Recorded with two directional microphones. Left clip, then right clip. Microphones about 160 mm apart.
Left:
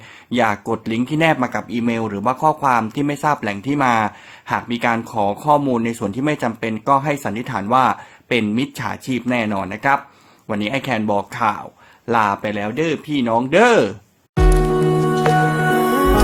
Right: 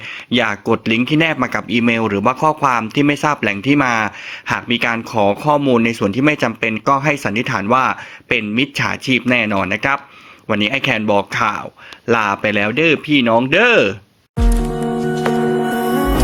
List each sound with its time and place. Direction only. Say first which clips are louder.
0.3 s speech: right 2 dB; 10° right (ahead or behind)
14.9 s music: right 1 dB; centre (ahead or behind)